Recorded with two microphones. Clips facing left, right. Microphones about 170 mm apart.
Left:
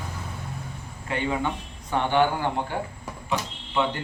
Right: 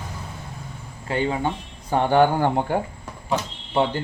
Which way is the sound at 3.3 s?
35° right (ahead or behind).